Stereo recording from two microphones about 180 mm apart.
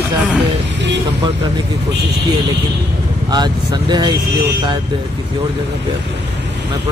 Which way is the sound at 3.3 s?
25° right (ahead or behind).